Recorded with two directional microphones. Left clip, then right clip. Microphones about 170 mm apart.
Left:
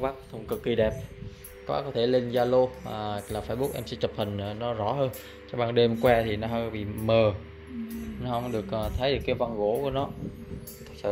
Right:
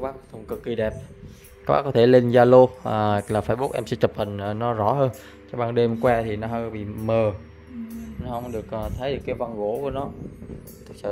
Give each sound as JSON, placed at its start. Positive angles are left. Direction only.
{"t": 0.0, "sound": "speech", "side_deg": -15}
{"t": 1.7, "sound": "speech", "side_deg": -50}
{"t": 5.5, "sound": "speech", "side_deg": -10}